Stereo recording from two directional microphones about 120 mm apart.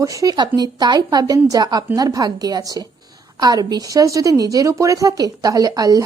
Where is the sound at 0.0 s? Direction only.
30° right (ahead or behind).